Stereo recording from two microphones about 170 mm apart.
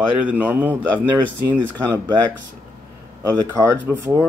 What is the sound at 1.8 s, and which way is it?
Speech, 20° right (ahead or behind).